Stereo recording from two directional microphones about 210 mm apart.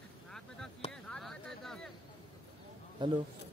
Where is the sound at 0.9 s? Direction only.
5° left (ahead or behind).